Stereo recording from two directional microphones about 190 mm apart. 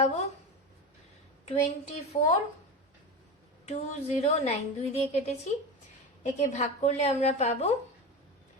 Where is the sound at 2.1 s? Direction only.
35° left (ahead or behind).